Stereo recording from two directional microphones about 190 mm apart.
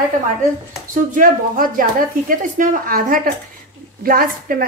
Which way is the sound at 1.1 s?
45° right (ahead or behind).